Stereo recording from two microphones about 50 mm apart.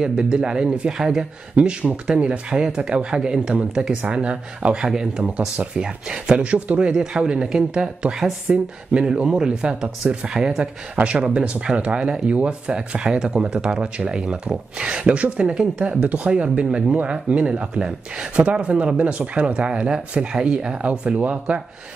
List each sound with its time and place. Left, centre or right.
0.0 s speech: centre
1.6 s speech: right
10.3 s speech: centre
11.1 s speech: right